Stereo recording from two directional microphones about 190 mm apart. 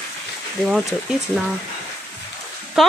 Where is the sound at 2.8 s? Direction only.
Centre (ahead or behind).